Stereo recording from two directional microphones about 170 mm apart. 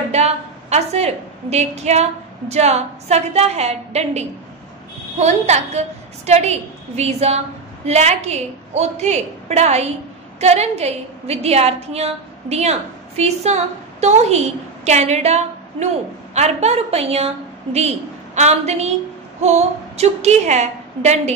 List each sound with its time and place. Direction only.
0.1 s a woman's voice: 40° right (ahead or behind)